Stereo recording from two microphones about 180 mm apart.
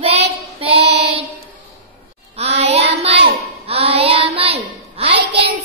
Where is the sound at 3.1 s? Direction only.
70° right (ahead or behind).